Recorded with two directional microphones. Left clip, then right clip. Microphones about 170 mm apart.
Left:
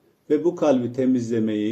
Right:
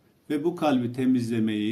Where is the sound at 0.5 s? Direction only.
50° right (ahead or behind).